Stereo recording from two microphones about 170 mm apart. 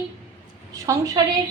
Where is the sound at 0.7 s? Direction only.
20° right (ahead or behind).